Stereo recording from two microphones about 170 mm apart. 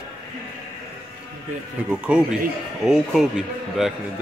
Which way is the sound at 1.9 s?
5° right (ahead or behind).